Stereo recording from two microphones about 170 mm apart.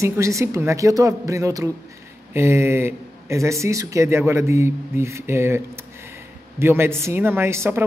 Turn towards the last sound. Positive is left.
turn(degrees=-15)  # may be behind; listen again after turning